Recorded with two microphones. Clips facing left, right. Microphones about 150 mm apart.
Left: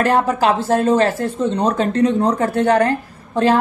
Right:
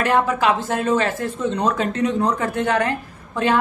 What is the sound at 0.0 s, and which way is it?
A woman's voice, 35° left (ahead or behind).